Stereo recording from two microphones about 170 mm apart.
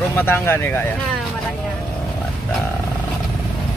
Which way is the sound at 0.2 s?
10° left (ahead or behind).